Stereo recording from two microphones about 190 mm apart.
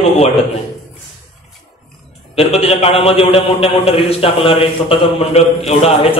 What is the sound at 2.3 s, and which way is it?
A man's voice, 30° left (ahead or behind).